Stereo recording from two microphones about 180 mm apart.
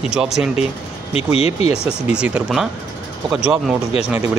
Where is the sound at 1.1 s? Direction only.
35° left (ahead or behind).